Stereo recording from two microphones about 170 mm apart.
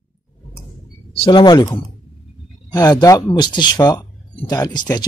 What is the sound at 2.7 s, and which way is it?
Speech, 25° left (ahead or behind).